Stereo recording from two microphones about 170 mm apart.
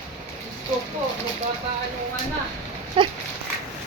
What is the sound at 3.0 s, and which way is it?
Dog, 30° right (ahead or behind).